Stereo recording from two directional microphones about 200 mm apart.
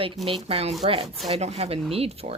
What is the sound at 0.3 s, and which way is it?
Speech, 30° right (ahead or behind).